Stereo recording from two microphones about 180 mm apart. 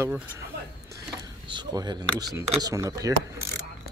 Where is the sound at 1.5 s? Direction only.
25° right (ahead or behind).